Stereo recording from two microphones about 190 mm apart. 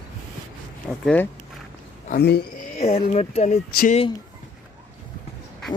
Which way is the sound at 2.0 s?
55° left (ahead or behind).